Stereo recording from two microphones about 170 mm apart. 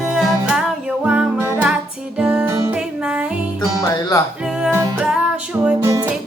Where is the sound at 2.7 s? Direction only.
5° right (ahead or behind).